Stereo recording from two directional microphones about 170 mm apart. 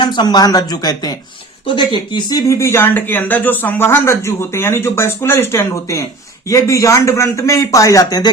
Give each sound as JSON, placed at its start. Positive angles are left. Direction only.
{"t": 0.0, "sound": "a man's voice", "side_deg": 25}